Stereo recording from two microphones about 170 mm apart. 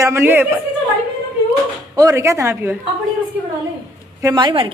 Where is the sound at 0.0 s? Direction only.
15° right (ahead or behind).